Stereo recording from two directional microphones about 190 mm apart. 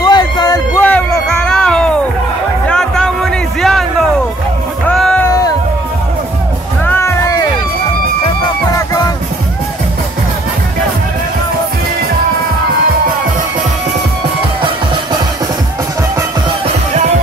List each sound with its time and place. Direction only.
0.0 s a sound: 20° left (ahead or behind); by 2.0 s 5° left (ahead or behind)
2.7 s music: 5° left (ahead or behind)
4.8 s music: 5° left (ahead or behind)
6.9 s music: 15° left (ahead or behind)
8.7 s music: 20° left (ahead or behind)
16.6 s music: 35° right (ahead or behind)